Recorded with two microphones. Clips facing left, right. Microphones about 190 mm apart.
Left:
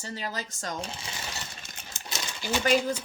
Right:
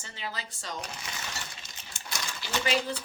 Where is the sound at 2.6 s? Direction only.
45° left (ahead or behind).